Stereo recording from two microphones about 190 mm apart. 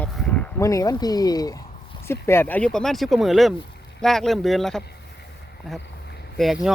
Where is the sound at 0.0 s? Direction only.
5° left (ahead or behind).